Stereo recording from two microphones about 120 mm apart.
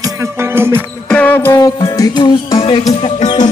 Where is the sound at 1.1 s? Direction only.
15° left (ahead or behind).